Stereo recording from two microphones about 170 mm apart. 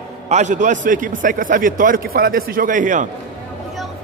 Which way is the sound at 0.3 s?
45° right (ahead or behind).